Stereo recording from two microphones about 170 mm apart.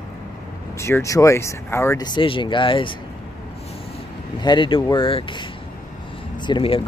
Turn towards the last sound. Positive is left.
turn(degrees=30)  # may be behind; listen again after turning